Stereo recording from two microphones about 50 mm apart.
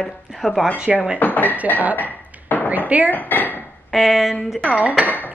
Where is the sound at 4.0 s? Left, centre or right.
Centre.